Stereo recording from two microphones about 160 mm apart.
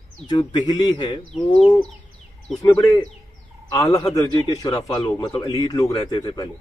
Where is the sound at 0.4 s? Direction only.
30° left (ahead or behind).